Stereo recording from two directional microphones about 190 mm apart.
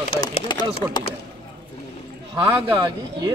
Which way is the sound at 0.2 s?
25° left (ahead or behind).